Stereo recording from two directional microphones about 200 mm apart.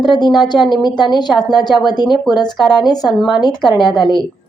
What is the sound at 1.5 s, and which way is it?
Speech, 20° left (ahead or behind).